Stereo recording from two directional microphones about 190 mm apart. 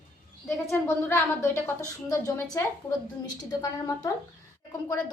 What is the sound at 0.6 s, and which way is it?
A woman's voice, 10° left (ahead or behind).